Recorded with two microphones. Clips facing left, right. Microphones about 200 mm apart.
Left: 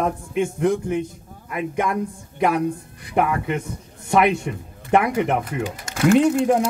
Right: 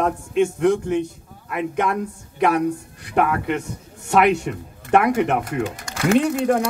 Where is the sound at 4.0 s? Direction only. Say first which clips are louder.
Right 1 dB; 70° right (ahead or behind).